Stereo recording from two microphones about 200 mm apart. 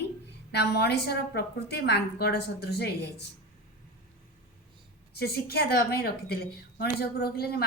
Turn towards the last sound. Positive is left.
turn(degrees=50)  # may be behind; listen again after turning